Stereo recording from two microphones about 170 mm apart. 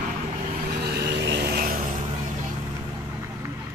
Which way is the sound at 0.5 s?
65° right (ahead or behind).